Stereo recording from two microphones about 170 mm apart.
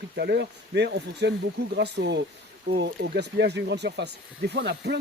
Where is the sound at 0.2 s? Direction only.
80° right.